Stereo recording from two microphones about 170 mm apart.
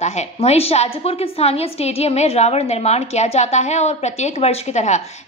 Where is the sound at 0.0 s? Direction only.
40° left (ahead or behind).